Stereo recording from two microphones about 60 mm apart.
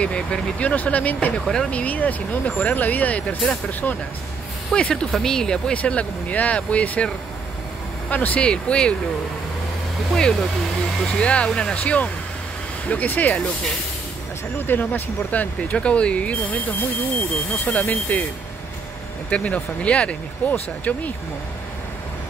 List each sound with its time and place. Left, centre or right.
0.0 s speech: centre
1.4 s speech: centre
1.7 s speech: left
5.1 s speech: centre
5.8 s speech: left
8.1 s speech: left
10.1 s speech: centre
11.1 s speech: centre
14.7 s speech: left
15.7 s speech: centre
17.6 s speech: left
19.3 s speech: left